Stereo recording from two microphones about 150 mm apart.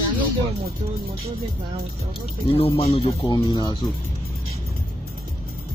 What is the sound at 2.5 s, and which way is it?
Speech, 40° left (ahead or behind).